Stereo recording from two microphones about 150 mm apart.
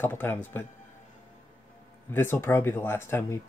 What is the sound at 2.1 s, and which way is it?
Speech, 15° left (ahead or behind).